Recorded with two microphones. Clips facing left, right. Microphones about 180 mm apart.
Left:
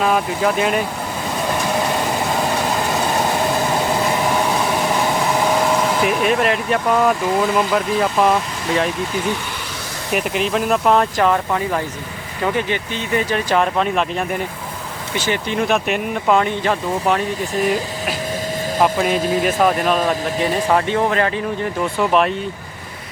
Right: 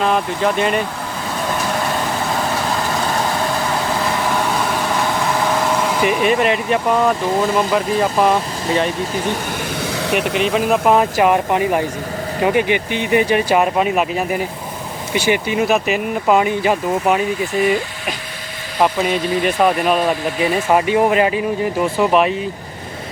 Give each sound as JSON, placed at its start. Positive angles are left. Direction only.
{"t": 0.0, "sound": "speech", "side_deg": 5}
{"t": 4.3, "sound": "vehicle", "side_deg": 15}
{"t": 5.5, "sound": "speech", "side_deg": 5}
{"t": 10.2, "sound": "speech", "side_deg": 0}
{"t": 19.4, "sound": "speech", "side_deg": 0}